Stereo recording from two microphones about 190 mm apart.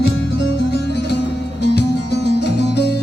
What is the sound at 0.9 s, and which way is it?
Music, 60° left (ahead or behind).